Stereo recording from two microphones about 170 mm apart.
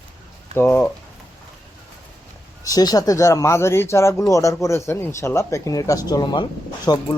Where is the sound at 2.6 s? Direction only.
20° left (ahead or behind).